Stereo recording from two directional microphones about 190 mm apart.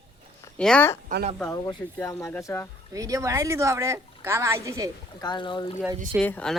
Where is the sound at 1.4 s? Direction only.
15° left (ahead or behind).